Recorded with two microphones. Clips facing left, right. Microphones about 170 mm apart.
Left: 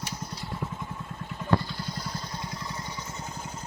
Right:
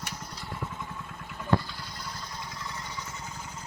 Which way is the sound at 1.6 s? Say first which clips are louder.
Left 5 dB; 35° left (ahead or behind).